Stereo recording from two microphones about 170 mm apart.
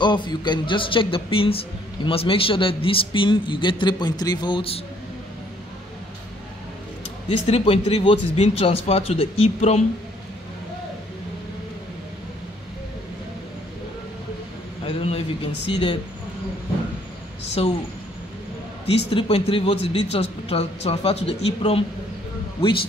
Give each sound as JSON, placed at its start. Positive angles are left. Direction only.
{"t": 0.0, "sound": "speech", "side_deg": 25}
{"t": 7.4, "sound": "speech", "side_deg": 35}
{"t": 14.9, "sound": "speech", "side_deg": 35}
{"t": 17.6, "sound": "speech", "side_deg": 35}
{"t": 19.0, "sound": "speech", "side_deg": 35}